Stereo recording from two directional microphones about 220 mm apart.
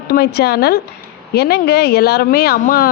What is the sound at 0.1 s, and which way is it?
Speech, 45° left (ahead or behind).